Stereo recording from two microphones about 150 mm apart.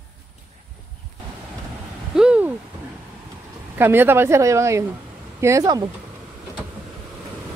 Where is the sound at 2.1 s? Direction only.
5° right (ahead or behind).